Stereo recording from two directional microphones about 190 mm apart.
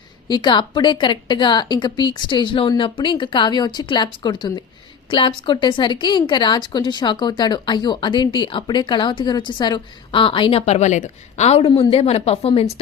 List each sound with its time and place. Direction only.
0.3 s a woman's voice: 25° left (ahead or behind)